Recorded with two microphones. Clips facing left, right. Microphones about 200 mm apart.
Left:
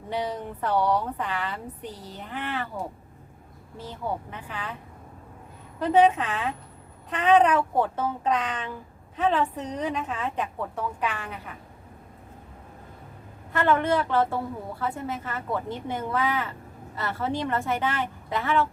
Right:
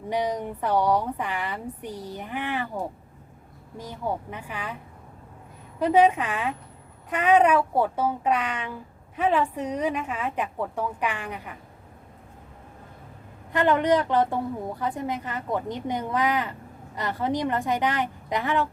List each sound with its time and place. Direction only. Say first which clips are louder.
0.1 s speech: right 3 dB; 15° right (ahead or behind)
5.8 s speech: even; 10° right (ahead or behind)
13.5 s speech: right 2 dB; 15° right (ahead or behind)